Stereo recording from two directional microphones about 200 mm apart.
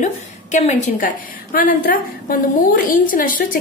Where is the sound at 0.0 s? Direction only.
35° left (ahead or behind).